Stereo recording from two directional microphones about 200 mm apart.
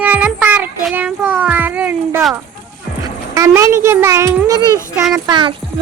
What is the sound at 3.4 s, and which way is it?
A child's voice, 15° right (ahead or behind).